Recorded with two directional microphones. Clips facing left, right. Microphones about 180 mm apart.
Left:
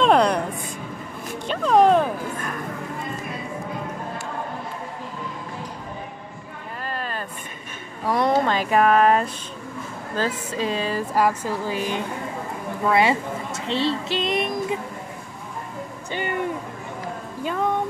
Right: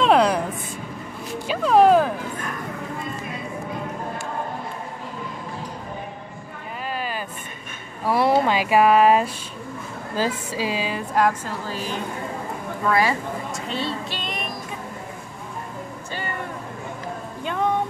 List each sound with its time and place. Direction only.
0.0 s a sound: centre (ahead or behind)
1.5 s a sound: 5° right (ahead or behind)
6.8 s vehicle: 5° right (ahead or behind)
8.0 s speech: 5° right (ahead or behind); by 13.1 s 25° left (ahead or behind)
13.7 s vehicle: 25° left (ahead or behind)
17.4 s music: 5° left (ahead or behind)